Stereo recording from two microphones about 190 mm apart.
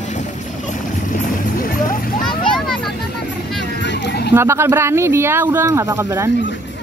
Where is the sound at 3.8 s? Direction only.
65° left (ahead or behind).